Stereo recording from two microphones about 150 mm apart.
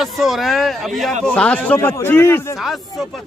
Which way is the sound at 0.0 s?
Centre (ahead or behind).